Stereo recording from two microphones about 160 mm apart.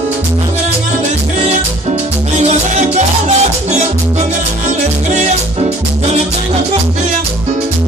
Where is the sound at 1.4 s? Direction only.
45° right (ahead or behind).